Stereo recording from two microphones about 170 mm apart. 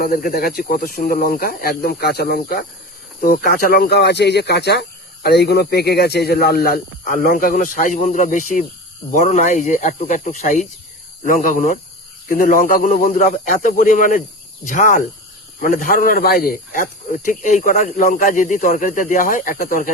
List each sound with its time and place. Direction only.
0.0 s speech: 55° left (ahead or behind)